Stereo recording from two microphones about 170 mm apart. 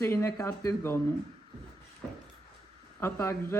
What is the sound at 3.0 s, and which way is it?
Speech, 15° left (ahead or behind).